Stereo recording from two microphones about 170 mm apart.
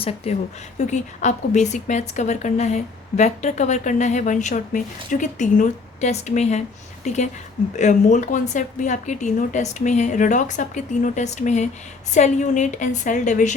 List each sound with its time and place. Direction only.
0.2 s speech: 35° left (ahead or behind)